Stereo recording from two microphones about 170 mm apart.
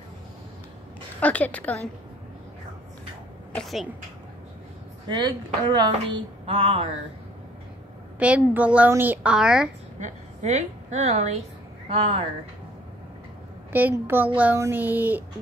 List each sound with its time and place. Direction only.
1.2 s a woman's voice: 10° left (ahead or behind)
3.5 s a woman's voice: centre (ahead or behind)
5.0 s a woman's voice: 25° right (ahead or behind)
8.2 s speech: 5° right (ahead or behind)
9.9 s a woman's voice: 45° right (ahead or behind)
13.7 s speech: 10° right (ahead or behind)